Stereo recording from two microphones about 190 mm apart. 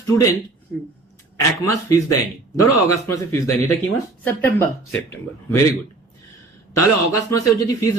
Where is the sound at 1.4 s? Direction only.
15° left (ahead or behind).